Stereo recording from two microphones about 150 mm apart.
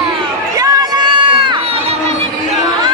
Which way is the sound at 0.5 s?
25° right (ahead or behind).